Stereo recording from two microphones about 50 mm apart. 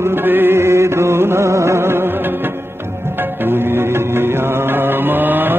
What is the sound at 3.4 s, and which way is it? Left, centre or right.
Music, right.